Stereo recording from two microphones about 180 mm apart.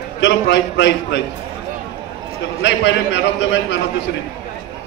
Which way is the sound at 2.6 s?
80° left.